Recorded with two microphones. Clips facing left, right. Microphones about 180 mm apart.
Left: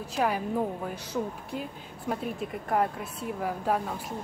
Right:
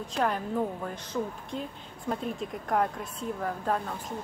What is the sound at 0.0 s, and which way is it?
A woman's voice, 10° left (ahead or behind).